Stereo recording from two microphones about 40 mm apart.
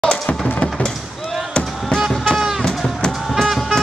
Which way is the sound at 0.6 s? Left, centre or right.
Left.